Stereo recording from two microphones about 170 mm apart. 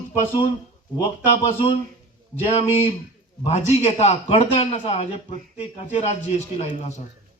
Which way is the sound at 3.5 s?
40° left (ahead or behind).